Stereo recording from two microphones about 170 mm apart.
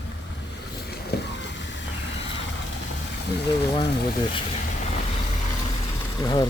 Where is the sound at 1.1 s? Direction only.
70° left (ahead or behind).